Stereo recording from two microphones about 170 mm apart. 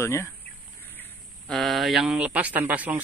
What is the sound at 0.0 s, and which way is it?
Speech, 15° left (ahead or behind).